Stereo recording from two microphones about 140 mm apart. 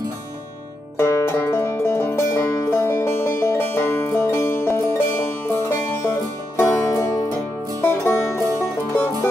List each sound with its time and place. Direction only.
0.9 s banjo: 20° left (ahead or behind)
6.6 s music: 20° left (ahead or behind)